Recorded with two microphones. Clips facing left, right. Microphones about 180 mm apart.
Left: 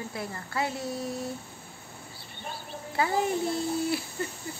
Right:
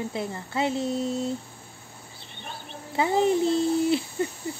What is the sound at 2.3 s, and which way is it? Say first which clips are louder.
Speech: left 1 dB; 20° right (ahead or behind).